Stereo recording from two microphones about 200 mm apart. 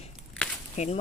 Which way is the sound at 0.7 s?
35° left (ahead or behind).